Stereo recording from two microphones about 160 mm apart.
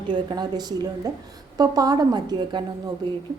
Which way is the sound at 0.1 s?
25° right (ahead or behind).